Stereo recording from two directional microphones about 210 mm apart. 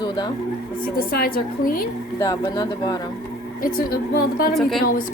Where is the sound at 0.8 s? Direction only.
45° left (ahead or behind).